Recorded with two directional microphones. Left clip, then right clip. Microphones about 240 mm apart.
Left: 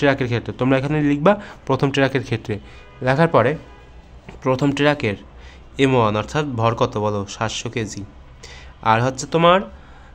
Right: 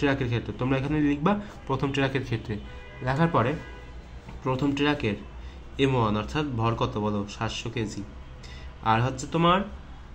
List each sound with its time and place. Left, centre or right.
0.0 s a man's voice: left